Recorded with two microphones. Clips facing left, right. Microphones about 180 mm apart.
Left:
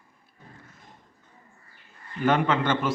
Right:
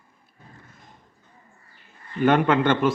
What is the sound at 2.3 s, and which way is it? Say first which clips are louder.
Speech: right 4 dB; 55° right (ahead or behind).